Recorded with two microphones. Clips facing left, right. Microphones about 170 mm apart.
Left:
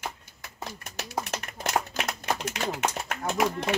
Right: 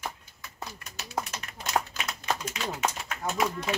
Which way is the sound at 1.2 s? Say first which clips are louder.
Left 6 dB; 60° left (ahead or behind).